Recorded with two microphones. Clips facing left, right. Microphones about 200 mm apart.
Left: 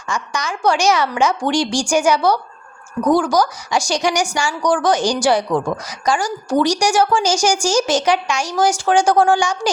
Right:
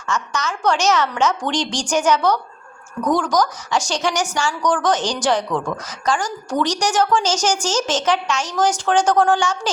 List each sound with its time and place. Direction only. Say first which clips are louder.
0.1 s a woman's voice: even; 10° left (ahead or behind)